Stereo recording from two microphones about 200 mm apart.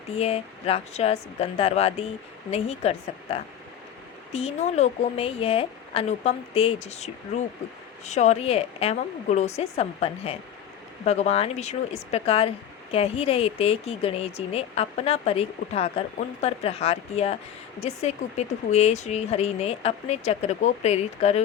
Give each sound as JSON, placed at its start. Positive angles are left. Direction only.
{"t": 0.2, "sound": "a woman's voice", "side_deg": 30}